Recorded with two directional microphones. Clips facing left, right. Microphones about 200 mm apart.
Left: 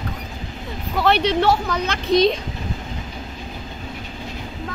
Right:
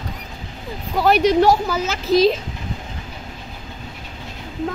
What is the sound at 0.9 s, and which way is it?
A woman's voice, 10° right (ahead or behind).